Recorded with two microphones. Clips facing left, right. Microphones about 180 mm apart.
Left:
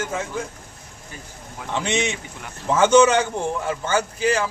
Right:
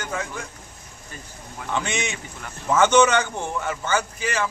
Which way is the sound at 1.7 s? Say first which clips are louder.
Left 3 dB; 25° left (ahead or behind).